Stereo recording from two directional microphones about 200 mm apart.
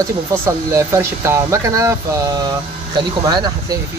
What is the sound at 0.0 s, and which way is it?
Speech, 15° right (ahead or behind).